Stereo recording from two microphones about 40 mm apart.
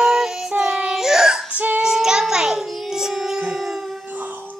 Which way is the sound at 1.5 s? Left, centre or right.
Right.